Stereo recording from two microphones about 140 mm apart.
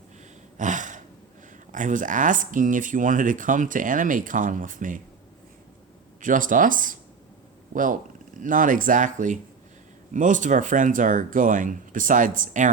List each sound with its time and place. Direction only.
0.5 s a sound: 65° right (ahead or behind)
1.7 s speech: 65° right (ahead or behind)
6.1 s speech: 70° right (ahead or behind)